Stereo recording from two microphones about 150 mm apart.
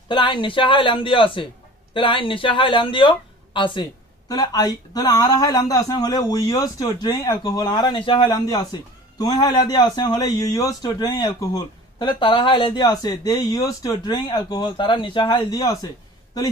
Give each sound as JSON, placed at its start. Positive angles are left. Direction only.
{"t": 0.1, "sound": "a man's voice", "side_deg": 30}